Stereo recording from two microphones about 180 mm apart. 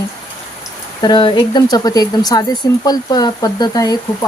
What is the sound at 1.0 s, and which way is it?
Speech, 25° left (ahead or behind).